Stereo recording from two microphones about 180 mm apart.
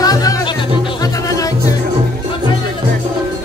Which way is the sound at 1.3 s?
20° left (ahead or behind).